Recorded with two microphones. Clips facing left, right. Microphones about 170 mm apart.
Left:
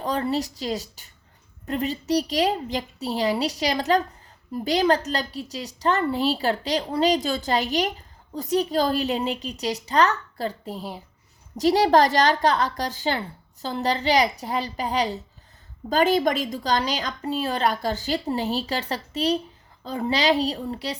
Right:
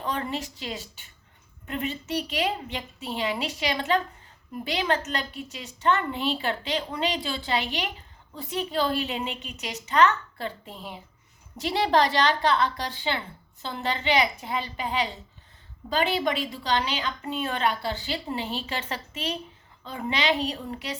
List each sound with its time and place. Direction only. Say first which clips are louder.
0.0 s a woman's voice: left 6 dB; 35° left (ahead or behind)